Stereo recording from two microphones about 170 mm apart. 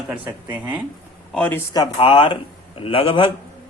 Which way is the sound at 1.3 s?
5° left (ahead or behind).